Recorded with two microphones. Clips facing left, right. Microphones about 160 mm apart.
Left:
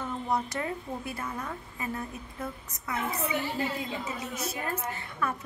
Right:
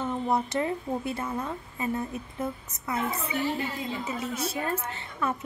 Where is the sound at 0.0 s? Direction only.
25° right (ahead or behind).